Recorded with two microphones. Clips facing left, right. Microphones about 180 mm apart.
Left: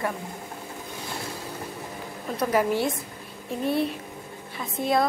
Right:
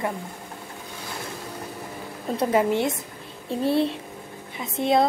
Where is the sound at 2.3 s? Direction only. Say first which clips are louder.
Right 2 dB; 25° right (ahead or behind).